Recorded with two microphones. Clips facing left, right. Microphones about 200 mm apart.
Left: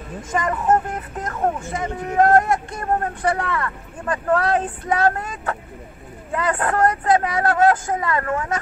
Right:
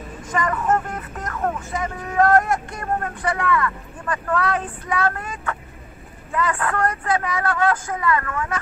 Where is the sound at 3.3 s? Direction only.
30° left (ahead or behind).